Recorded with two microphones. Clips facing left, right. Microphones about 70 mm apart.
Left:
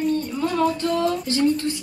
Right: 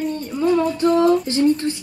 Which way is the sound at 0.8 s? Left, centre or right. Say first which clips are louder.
Right 7 dB; right.